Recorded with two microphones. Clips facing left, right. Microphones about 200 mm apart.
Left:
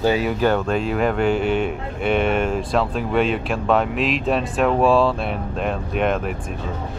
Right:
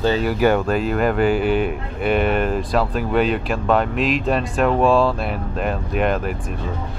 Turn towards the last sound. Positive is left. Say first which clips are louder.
# right 1 dB
turn(degrees=0)  # may be behind; listen again after turning